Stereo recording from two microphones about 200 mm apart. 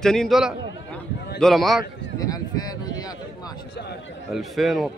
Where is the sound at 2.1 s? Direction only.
20° left (ahead or behind).